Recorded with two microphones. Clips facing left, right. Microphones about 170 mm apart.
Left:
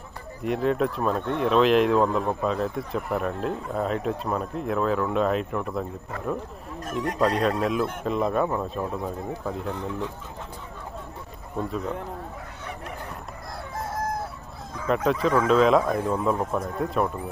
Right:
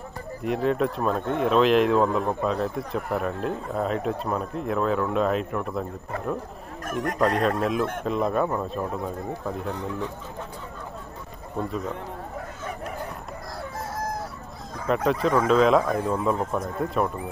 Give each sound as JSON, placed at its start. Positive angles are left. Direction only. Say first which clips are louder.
{"t": 0.4, "sound": "speech", "louder": "even", "side_deg": 0}
{"t": 6.9, "sound": "speech", "louder": "even", "side_deg": -50}
{"t": 7.2, "sound": "speech", "louder": "even", "side_deg": 0}
{"t": 14.9, "sound": "speech", "louder": "even", "side_deg": 0}